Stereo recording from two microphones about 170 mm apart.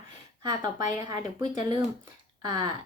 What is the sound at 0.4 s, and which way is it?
Speech, 20° right (ahead or behind).